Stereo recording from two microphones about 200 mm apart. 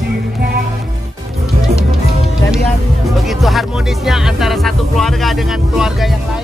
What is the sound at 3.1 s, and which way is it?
Speech, centre (ahead or behind).